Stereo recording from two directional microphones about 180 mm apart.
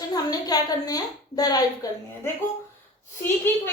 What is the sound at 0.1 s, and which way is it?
A woman's voice, 20° left (ahead or behind).